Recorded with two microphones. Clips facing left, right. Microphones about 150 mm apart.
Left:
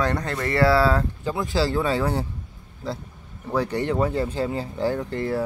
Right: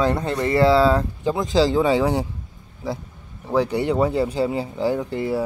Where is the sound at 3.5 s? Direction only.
10° right (ahead or behind).